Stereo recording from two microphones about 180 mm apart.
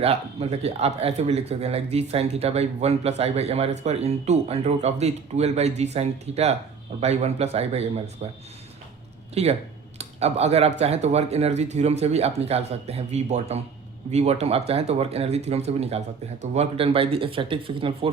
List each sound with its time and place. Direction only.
0.0 s speech: 35° right (ahead or behind)
9.3 s speech: 35° right (ahead or behind)